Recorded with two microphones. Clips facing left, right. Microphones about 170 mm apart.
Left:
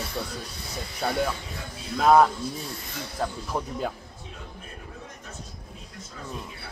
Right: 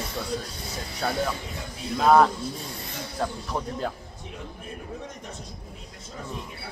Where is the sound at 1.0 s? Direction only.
5° left (ahead or behind).